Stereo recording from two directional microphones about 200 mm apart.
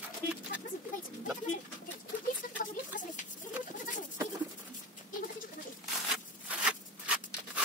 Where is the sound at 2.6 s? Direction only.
40° left (ahead or behind).